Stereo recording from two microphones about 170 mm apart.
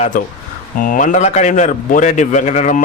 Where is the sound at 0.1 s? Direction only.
50° left (ahead or behind).